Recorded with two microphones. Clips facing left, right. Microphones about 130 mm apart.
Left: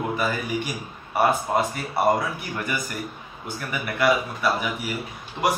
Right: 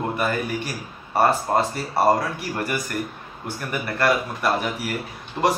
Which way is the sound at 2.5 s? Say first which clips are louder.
Right 5 dB; 40° right (ahead or behind).